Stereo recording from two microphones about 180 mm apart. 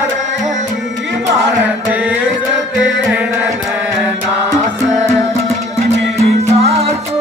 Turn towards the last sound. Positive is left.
turn(degrees=-35)  # may be behind; listen again after turning